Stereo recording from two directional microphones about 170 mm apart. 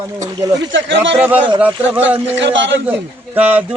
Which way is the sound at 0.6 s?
90° right.